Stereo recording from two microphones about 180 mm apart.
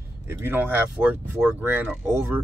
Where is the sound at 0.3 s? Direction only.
10° right (ahead or behind).